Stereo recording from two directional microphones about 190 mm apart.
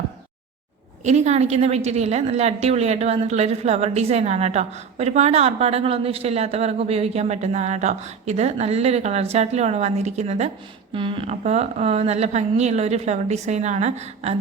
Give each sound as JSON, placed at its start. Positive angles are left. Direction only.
{"t": 1.0, "sound": "a woman's voice", "side_deg": -35}